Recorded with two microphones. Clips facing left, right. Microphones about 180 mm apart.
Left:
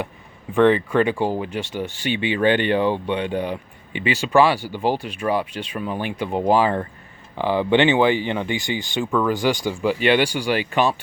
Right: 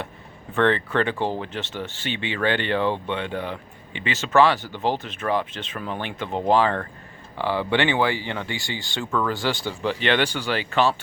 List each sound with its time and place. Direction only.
0.5 s speech: 15° left (ahead or behind)